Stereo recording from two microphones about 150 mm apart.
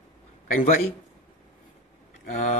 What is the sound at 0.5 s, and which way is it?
Speech, 65° left (ahead or behind).